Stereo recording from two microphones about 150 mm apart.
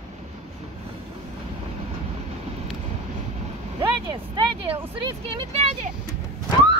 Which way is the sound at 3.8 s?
30° right (ahead or behind).